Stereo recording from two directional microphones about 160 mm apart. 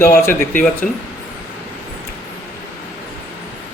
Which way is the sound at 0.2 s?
15° left (ahead or behind).